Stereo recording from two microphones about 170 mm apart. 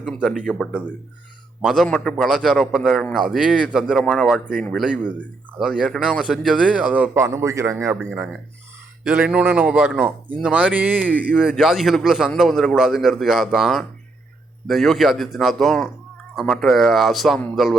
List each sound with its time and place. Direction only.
0.0 s a man's voice: centre (ahead or behind); by 7.9 s 15° right (ahead or behind)
8.1 s a man's voice: 5° right (ahead or behind)
11.0 s a man's voice: 10° left (ahead or behind)